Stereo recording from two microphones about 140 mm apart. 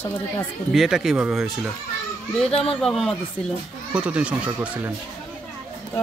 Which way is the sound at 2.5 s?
45° left (ahead or behind).